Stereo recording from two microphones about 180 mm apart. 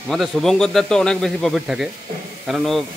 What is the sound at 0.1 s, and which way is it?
A man's voice, centre (ahead or behind).